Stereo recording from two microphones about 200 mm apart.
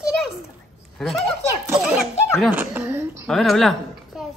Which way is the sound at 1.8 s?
5° right (ahead or behind).